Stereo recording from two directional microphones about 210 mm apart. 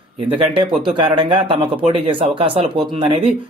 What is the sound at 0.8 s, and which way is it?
Speech, 25° right (ahead or behind).